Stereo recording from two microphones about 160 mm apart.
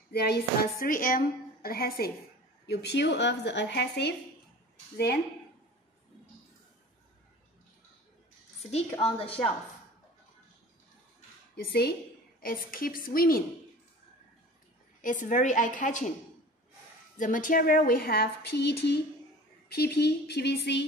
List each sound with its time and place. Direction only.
0.1 s a woman's voice: 80° left
2.6 s speech: 90° left
4.9 s speech: 80° left
9.0 s a woman's voice: 40° left (ahead or behind)
11.5 s a woman's voice: 80° left
12.4 s speech: 60° left (ahead or behind)
15.0 s a woman's voice: 55° left (ahead or behind)
17.2 s speech: 55° left (ahead or behind); by 20.8 s 90° left